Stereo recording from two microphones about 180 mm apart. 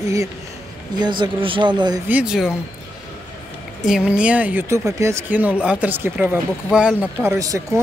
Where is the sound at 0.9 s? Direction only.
25° right (ahead or behind).